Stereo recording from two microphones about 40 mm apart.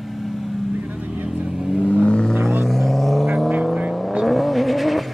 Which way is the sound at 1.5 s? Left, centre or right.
Centre.